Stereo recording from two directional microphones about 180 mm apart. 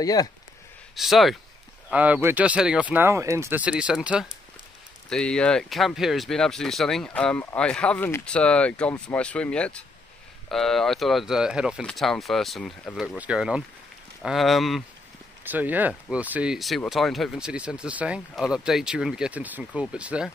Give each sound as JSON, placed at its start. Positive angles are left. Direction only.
{"t": 0.0, "sound": "speech", "side_deg": 20}
{"t": 0.9, "sound": "speech", "side_deg": 0}